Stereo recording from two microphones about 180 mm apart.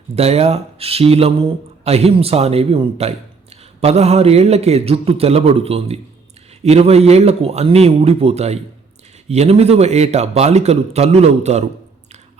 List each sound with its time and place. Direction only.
0.2 s speech: 35° right (ahead or behind)